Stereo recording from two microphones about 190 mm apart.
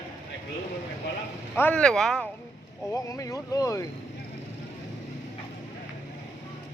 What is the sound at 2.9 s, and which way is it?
Speech, 15° left (ahead or behind).